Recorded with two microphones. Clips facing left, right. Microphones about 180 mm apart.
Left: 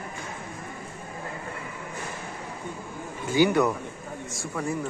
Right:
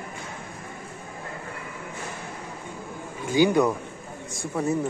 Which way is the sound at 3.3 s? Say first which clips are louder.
Right 1 dB; 15° right (ahead or behind).